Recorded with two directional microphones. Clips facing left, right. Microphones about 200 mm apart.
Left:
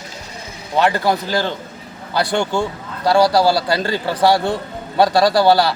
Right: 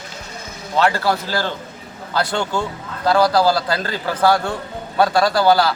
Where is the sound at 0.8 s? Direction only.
15° left (ahead or behind).